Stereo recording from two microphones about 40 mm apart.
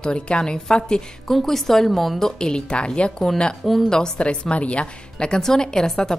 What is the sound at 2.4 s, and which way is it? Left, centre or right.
A woman's voice, left.